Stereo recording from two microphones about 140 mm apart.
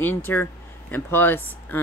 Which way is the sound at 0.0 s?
15° left (ahead or behind).